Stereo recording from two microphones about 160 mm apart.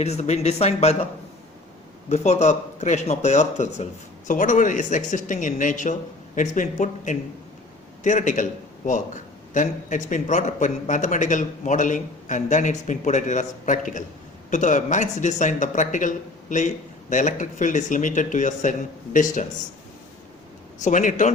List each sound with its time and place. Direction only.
0.0 s speech: 45° left (ahead or behind)
2.0 s speech: 45° left (ahead or behind)
9.6 s speech: 50° left (ahead or behind)
20.8 s speech: 50° left (ahead or behind)